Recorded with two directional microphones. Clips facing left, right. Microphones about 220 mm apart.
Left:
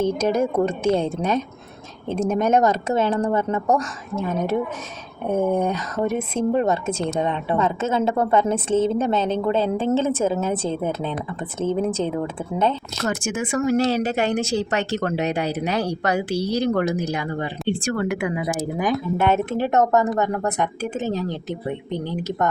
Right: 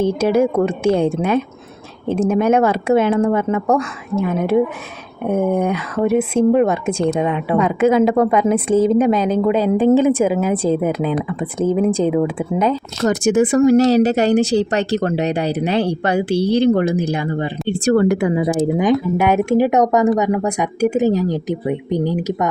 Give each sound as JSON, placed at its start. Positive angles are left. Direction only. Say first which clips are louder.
{"t": 0.0, "sound": "speech", "louder": "right 5 dB", "side_deg": -10}
{"t": 13.1, "sound": "speech", "louder": "right 10 dB", "side_deg": -35}
{"t": 17.7, "sound": "speech", "louder": "right 9 dB", "side_deg": -40}
{"t": 19.1, "sound": "speech", "louder": "right 6 dB", "side_deg": -10}